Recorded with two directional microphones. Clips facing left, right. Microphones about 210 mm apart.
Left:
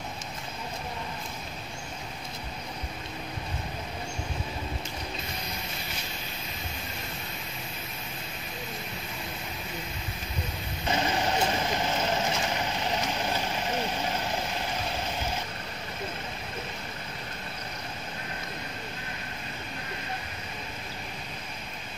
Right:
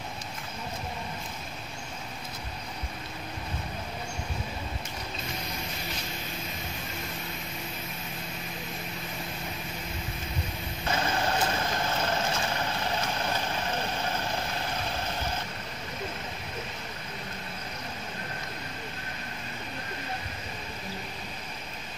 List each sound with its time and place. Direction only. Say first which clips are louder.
10.9 s vehicle: left 1 dB; 15° left (ahead or behind)